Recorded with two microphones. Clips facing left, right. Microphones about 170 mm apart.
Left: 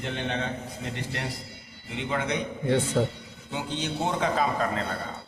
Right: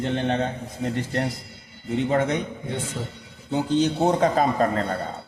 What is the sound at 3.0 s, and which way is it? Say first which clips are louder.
Speech: left 8 dB; 70° left (ahead or behind).